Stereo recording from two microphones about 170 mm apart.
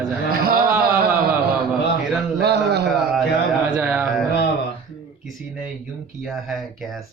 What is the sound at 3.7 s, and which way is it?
Speech, 5° right (ahead or behind).